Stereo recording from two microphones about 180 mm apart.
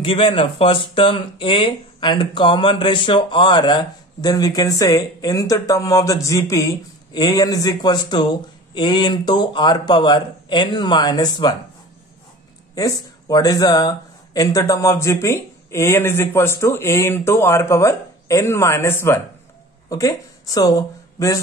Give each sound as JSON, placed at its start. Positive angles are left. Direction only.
{"t": 0.0, "sound": "speech", "side_deg": 30}
{"t": 12.7, "sound": "speech", "side_deg": 20}